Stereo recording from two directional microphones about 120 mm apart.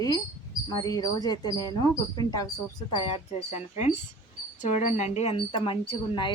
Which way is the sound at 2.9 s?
50° left (ahead or behind).